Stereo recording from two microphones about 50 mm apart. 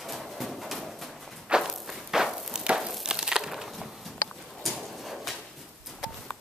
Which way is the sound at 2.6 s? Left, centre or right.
Centre.